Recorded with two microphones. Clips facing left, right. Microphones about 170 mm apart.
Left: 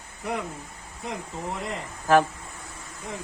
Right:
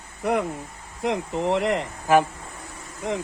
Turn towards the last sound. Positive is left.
turn(degrees=-85)